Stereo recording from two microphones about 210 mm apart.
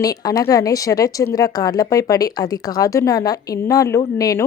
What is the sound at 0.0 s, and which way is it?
A woman's voice, 15° left (ahead or behind).